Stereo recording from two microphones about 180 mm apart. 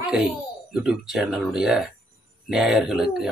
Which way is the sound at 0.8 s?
Centre (ahead or behind).